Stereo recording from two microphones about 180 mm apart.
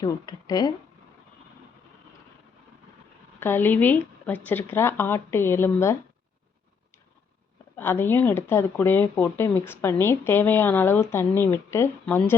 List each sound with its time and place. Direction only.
0.0 s speech: 20° left (ahead or behind)
3.4 s speech: 10° left (ahead or behind)
7.8 s speech: 10° left (ahead or behind)